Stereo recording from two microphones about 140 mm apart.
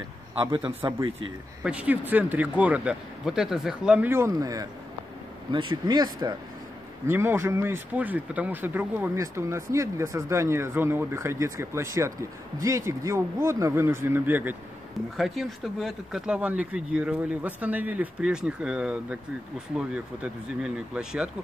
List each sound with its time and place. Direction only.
0.5 s speech: 40° right (ahead or behind)
1.6 s speech: 10° right (ahead or behind); by 4.6 s 25° right (ahead or behind)
5.5 s speech: 35° right (ahead or behind)
7.1 s speech: 15° right (ahead or behind)
15.1 s speech: centre (ahead or behind)